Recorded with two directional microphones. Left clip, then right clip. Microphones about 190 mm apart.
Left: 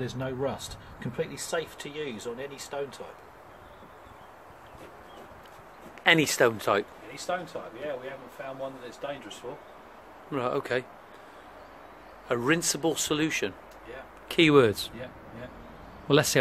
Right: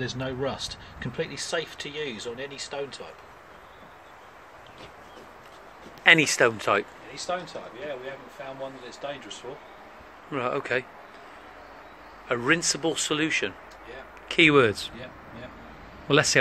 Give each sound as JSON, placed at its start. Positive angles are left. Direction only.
{"t": 0.0, "sound": "speech", "side_deg": -5}
{"t": 6.0, "sound": "speech", "side_deg": 5}
{"t": 9.0, "sound": "speech", "side_deg": 5}
{"t": 10.3, "sound": "speech", "side_deg": 15}
{"t": 12.3, "sound": "speech", "side_deg": 15}
{"t": 16.1, "sound": "speech", "side_deg": 15}